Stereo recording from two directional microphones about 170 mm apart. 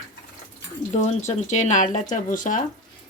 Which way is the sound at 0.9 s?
45° left (ahead or behind).